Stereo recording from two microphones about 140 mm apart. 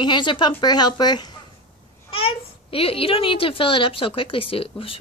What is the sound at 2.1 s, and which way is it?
A child's voice, 40° left (ahead or behind).